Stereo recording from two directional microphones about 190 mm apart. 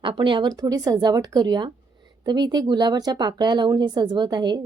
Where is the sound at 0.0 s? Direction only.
25° right (ahead or behind).